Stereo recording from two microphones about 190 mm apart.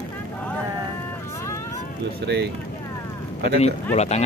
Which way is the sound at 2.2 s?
65° right (ahead or behind).